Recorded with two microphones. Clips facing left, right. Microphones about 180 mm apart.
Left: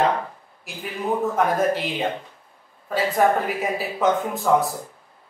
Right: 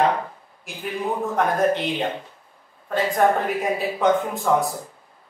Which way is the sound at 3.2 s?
5° left (ahead or behind).